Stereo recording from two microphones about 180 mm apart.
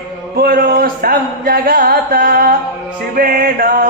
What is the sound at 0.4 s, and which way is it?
Speech, 55° right (ahead or behind).